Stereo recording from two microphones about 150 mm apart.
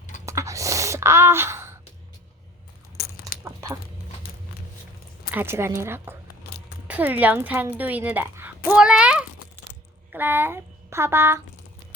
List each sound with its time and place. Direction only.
0.3 s gasp: 20° right (ahead or behind)
3.4 s a sound: 20° right (ahead or behind)
5.3 s a woman's voice: 15° right (ahead or behind)